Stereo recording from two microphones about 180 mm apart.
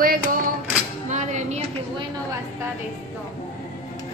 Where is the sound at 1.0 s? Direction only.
40° right (ahead or behind).